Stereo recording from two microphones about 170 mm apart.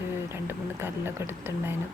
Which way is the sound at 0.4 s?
15° right (ahead or behind).